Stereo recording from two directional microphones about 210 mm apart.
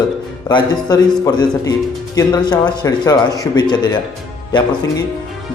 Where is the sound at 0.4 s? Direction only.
20° left (ahead or behind).